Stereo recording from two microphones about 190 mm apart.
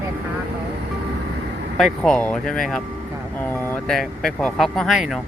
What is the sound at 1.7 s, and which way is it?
Speech, centre (ahead or behind).